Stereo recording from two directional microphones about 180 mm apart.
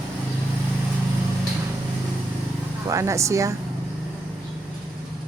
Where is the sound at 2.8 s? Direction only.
15° right (ahead or behind).